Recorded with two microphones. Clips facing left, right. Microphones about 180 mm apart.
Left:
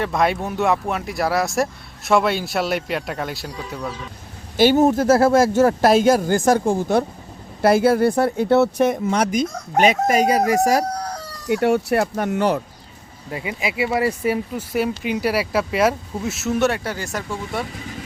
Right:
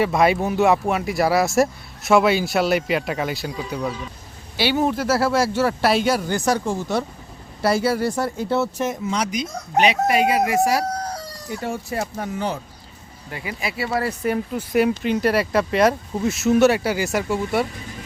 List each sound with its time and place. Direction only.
0.0 s speech: 5° right (ahead or behind)
4.5 s speech: 45° left (ahead or behind)
11.4 s speech: 70° left (ahead or behind)
13.3 s speech: 25° left (ahead or behind); by 17.7 s 5° right (ahead or behind)